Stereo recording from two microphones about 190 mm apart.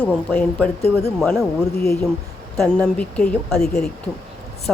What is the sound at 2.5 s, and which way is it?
Speech, 5° left (ahead or behind).